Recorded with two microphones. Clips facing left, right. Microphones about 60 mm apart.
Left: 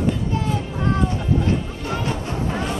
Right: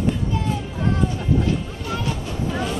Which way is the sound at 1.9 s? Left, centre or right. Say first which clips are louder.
Left 2 dB; left.